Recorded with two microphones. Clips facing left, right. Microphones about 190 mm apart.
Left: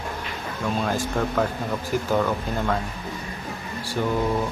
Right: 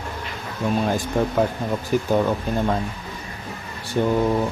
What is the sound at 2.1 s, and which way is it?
Speech, 20° right (ahead or behind).